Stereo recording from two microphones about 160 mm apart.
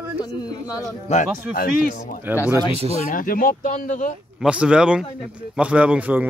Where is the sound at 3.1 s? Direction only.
60° left (ahead or behind).